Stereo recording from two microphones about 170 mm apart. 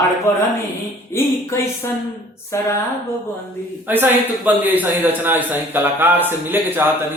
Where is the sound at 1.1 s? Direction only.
15° left (ahead or behind).